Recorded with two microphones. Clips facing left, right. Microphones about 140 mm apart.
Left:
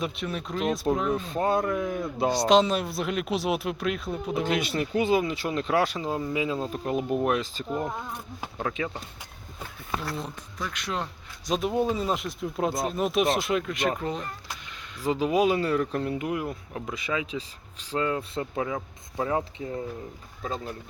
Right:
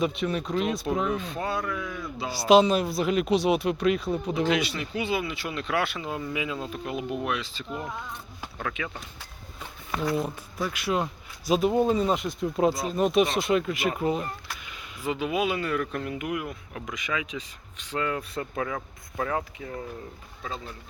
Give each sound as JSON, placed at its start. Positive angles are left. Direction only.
{"t": 0.0, "sound": "speech", "side_deg": 0}
{"t": 1.1, "sound": "speech", "side_deg": 40}
{"t": 2.3, "sound": "speech", "side_deg": -5}
{"t": 4.4, "sound": "speech", "side_deg": 50}
{"t": 10.0, "sound": "speech", "side_deg": -5}
{"t": 15.0, "sound": "speech", "side_deg": 35}